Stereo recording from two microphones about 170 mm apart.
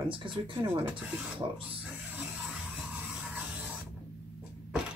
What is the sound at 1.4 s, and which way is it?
Speech, 35° right (ahead or behind).